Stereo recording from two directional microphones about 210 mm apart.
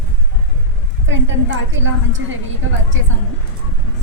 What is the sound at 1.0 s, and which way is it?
A woman's voice, 60° right (ahead or behind).